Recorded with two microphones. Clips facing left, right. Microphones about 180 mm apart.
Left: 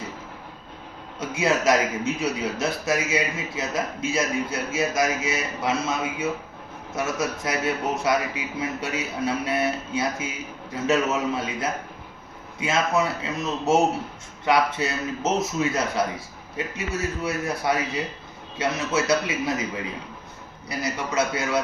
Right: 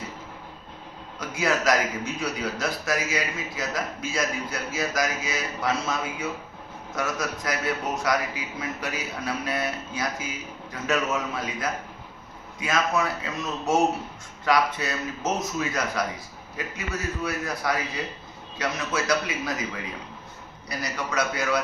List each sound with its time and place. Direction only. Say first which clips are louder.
1.2 s a man's voice: left 3 dB; 25° left (ahead or behind)